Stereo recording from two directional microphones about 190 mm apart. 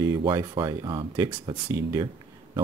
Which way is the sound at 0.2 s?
20° right (ahead or behind).